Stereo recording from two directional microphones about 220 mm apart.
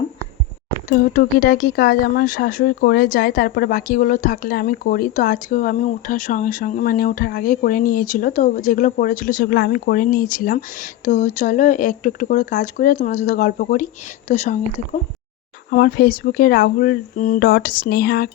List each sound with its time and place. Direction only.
0.9 s speech: 40° left (ahead or behind)
15.7 s speech: 40° left (ahead or behind)